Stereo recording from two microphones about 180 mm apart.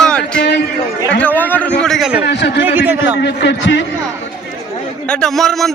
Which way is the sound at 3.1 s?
75° left (ahead or behind).